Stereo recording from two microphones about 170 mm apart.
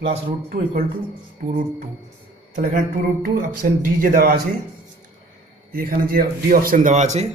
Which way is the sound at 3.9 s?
55° right (ahead or behind).